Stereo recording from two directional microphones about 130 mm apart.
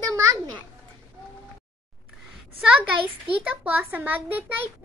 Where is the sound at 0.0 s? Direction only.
25° right (ahead or behind).